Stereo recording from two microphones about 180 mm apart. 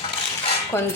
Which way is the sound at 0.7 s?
15° left (ahead or behind).